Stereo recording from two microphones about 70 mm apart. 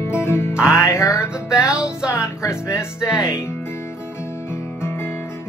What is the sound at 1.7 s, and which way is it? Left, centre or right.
Music, centre.